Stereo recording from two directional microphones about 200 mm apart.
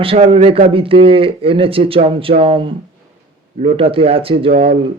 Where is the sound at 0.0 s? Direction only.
30° right (ahead or behind).